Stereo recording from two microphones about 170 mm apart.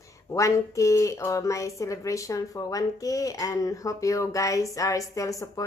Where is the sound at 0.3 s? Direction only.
20° left (ahead or behind).